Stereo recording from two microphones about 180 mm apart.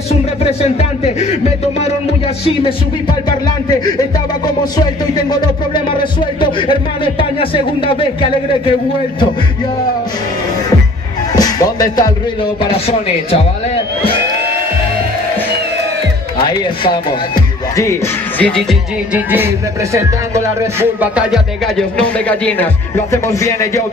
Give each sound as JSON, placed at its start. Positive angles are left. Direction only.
{"t": 0.4, "sound": "speech", "side_deg": 35}
{"t": 6.4, "sound": "a man's voice", "side_deg": 30}
{"t": 11.3, "sound": "speech", "side_deg": 20}
{"t": 12.7, "sound": "speech", "side_deg": 35}
{"t": 16.4, "sound": "a man's voice", "side_deg": 25}
{"t": 17.7, "sound": "music", "side_deg": 15}
{"t": 19.1, "sound": "music", "side_deg": -10}